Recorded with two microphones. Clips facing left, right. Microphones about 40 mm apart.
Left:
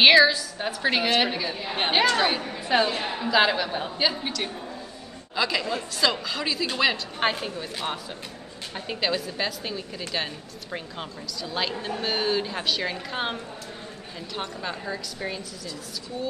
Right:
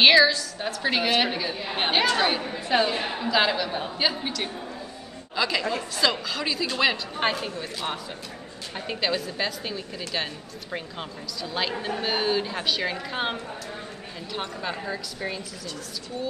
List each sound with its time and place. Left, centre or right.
0.0 s a woman's voice: centre
3.2 s a woman's voice: centre
5.3 s a woman's voice: centre
8.7 s a woman's voice: centre